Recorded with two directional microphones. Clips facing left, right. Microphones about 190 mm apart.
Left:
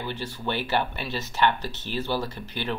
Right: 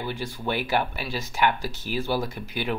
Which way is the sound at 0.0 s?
15° right (ahead or behind).